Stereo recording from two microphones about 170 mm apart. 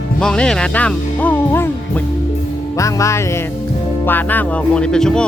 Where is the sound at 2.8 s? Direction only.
20° left (ahead or behind).